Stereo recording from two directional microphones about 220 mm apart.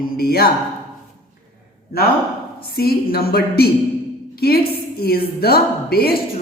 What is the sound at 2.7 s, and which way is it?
Speech, 45° left (ahead or behind).